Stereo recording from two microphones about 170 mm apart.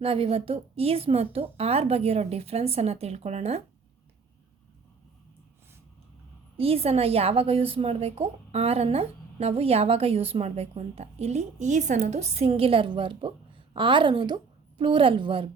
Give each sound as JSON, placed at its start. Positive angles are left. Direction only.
{"t": 0.0, "sound": "a woman's voice", "side_deg": -35}
{"t": 6.6, "sound": "a woman's voice", "side_deg": -35}